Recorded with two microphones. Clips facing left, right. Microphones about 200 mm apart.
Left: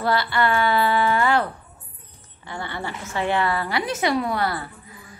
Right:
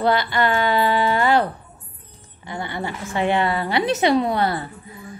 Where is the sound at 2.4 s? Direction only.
15° right (ahead or behind).